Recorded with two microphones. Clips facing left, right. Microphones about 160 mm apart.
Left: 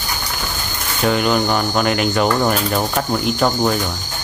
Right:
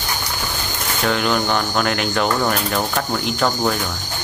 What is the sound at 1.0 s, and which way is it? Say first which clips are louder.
Speech: left 3 dB; 5° left (ahead or behind).